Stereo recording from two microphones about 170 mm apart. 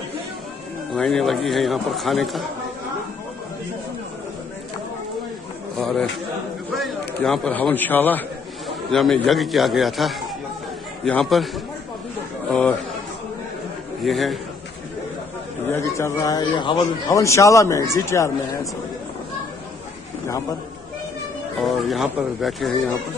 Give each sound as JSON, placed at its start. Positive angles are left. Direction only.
{"t": 0.9, "sound": "speech", "side_deg": 5}
{"t": 5.8, "sound": "speech", "side_deg": 0}
{"t": 14.0, "sound": "speech", "side_deg": 0}
{"t": 15.7, "sound": "speech", "side_deg": 15}
{"t": 21.6, "sound": "speech", "side_deg": 0}